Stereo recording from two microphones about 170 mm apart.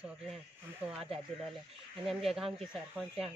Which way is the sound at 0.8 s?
35° right (ahead or behind).